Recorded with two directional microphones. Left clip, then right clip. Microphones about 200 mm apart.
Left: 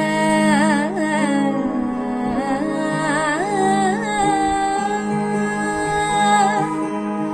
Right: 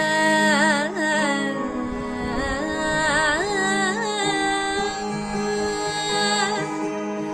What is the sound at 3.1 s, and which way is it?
Music, 20° right (ahead or behind).